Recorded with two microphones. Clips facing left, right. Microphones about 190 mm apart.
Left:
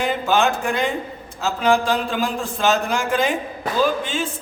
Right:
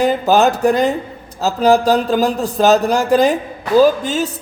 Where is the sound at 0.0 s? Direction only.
40° right (ahead or behind).